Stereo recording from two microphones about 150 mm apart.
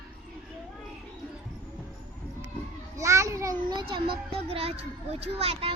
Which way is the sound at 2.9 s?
20° right (ahead or behind).